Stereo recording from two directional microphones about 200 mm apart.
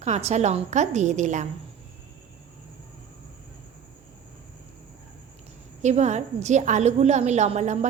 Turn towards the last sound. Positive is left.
turn(degrees=-35)  # may be behind; listen again after turning